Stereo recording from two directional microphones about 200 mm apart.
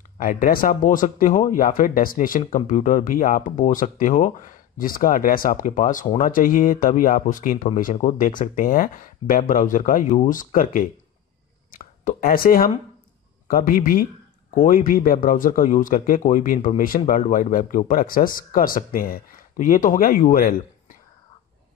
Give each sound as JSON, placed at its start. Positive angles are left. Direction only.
{"t": 0.2, "sound": "speech", "side_deg": 45}